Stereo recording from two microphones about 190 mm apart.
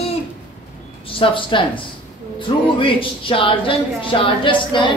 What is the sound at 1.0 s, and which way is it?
A man's voice, 25° left (ahead or behind).